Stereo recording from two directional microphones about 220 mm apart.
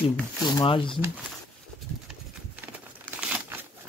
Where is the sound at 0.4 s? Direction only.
20° left (ahead or behind).